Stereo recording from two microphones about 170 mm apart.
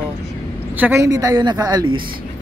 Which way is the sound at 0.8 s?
15° right (ahead or behind).